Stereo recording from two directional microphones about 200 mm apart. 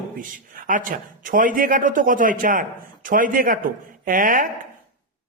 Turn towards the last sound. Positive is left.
turn(degrees=-40)  # may be behind; listen again after turning